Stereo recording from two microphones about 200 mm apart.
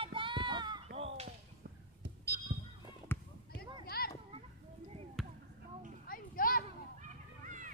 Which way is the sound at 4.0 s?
50° left (ahead or behind).